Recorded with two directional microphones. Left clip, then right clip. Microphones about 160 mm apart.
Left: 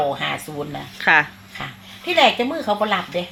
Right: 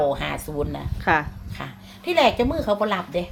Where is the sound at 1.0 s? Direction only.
Centre (ahead or behind).